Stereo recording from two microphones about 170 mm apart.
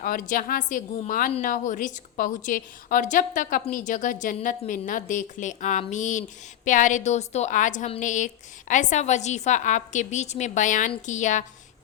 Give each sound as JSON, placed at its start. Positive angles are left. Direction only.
{"t": 0.0, "sound": "a woman's voice", "side_deg": 55}